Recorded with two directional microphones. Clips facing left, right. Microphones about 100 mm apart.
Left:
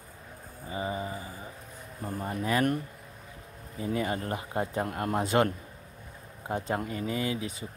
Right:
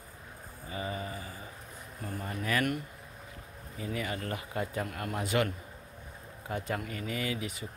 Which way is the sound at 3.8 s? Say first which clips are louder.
Left 5 dB; 30° left (ahead or behind).